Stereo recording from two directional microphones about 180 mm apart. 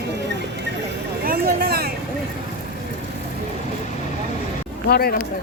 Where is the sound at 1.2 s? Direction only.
55° right (ahead or behind).